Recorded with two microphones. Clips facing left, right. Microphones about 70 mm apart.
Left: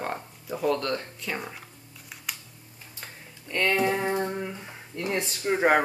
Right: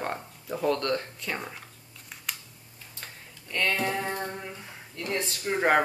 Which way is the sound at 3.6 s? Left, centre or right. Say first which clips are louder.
Left 4 dB; left.